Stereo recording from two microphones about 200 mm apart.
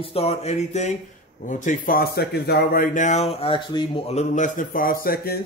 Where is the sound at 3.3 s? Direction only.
25° left (ahead or behind); by 5.4 s 50° left (ahead or behind).